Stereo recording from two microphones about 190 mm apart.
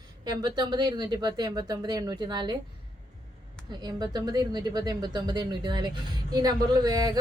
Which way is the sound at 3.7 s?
20° right (ahead or behind).